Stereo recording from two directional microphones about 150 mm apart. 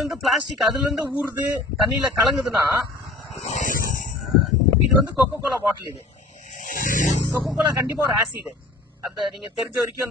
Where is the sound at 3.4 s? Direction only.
55° left (ahead or behind).